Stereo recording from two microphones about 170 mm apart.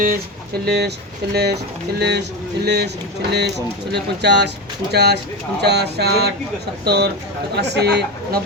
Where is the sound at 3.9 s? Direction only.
80° right.